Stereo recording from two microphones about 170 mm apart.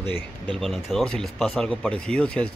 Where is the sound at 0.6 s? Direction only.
Centre (ahead or behind).